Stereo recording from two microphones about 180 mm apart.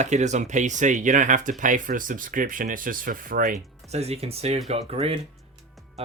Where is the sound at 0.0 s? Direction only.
40° right (ahead or behind).